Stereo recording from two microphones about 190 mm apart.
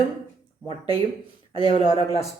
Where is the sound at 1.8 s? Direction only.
20° right (ahead or behind).